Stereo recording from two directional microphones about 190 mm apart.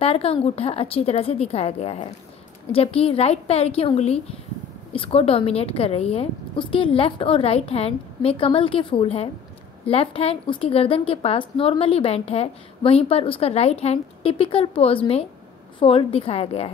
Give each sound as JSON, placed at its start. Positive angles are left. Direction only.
{"t": 0.0, "sound": "a woman's voice", "side_deg": 30}